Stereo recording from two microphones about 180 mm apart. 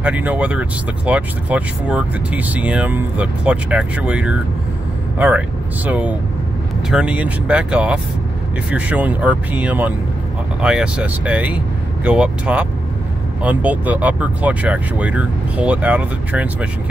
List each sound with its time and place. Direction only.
0.0 s speech: 10° right (ahead or behind)
5.9 s speech: 10° right (ahead or behind)